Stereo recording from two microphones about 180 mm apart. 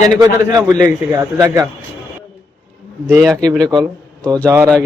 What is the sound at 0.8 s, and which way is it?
Speech, 20° right (ahead or behind).